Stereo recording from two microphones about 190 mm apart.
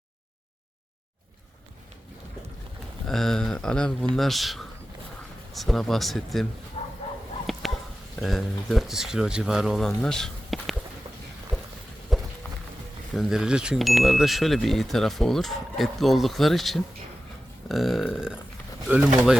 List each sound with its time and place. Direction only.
3.1 s speech: centre (ahead or behind)
6.8 s bow-wow: 30° left (ahead or behind)
7.5 s a sound: centre (ahead or behind)
8.2 s speech: centre (ahead or behind)
11.5 s a sound: centre (ahead or behind)
12.1 s walk: centre (ahead or behind)
13.1 s speech: 5° right (ahead or behind)